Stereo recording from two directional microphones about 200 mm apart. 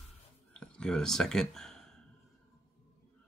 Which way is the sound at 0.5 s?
5° left (ahead or behind).